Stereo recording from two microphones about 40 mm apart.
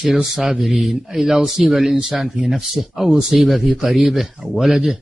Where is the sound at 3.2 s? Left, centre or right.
Centre.